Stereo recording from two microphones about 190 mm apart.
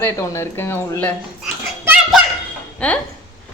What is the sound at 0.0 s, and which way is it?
Speech, 15° left (ahead or behind).